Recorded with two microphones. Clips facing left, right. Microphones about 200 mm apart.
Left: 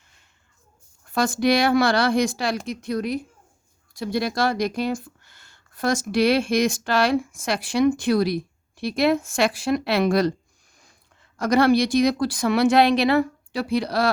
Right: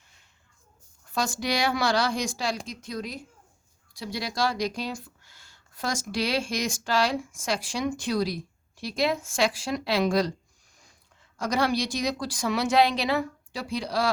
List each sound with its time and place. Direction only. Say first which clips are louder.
1.1 s speech: left 8 dB; 55° left (ahead or behind)
11.3 s speech: left 8 dB; 60° left (ahead or behind)